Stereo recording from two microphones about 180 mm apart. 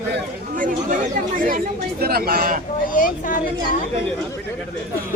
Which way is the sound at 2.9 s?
50° left (ahead or behind).